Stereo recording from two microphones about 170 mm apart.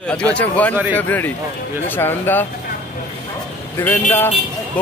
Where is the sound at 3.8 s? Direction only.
10° left (ahead or behind).